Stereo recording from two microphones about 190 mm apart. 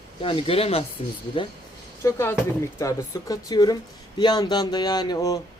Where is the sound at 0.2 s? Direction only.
30° left (ahead or behind).